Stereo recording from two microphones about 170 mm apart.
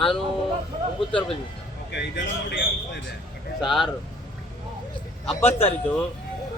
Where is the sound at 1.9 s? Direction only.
90° left.